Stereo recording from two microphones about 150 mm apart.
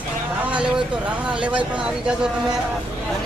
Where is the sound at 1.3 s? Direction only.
10° right (ahead or behind).